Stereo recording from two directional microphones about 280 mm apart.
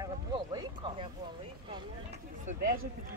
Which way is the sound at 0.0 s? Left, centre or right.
Centre.